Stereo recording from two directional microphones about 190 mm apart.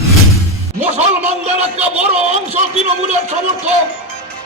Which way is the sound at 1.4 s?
35° right (ahead or behind).